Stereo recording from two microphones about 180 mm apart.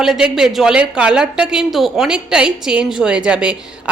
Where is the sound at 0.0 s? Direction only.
Centre (ahead or behind).